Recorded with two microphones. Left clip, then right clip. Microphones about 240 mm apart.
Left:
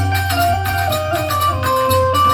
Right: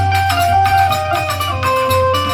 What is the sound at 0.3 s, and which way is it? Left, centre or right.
Music, centre.